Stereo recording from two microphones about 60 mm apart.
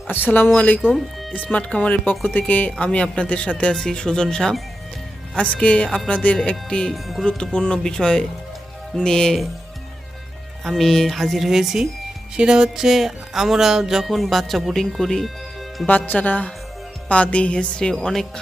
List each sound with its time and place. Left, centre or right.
0.1 s a man's voice: left; by 4.5 s centre
5.4 s a man's voice: left
6.9 s speech: centre
7.3 s a woman's voice: centre
10.6 s speech: centre
15.9 s a man's voice: left; by 18.3 s centre